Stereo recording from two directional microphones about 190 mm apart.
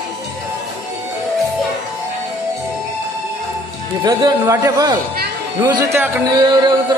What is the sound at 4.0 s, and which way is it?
Speech, 20° right (ahead or behind).